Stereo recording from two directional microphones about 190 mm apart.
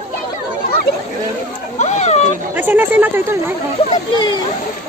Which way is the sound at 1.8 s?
35° left (ahead or behind).